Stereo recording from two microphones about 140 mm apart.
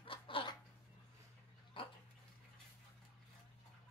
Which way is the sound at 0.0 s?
40° left (ahead or behind).